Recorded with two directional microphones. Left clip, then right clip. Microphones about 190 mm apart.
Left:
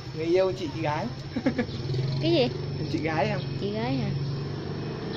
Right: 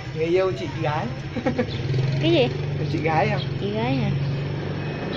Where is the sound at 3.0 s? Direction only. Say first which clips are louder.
Right 6 dB; 50° left (ahead or behind).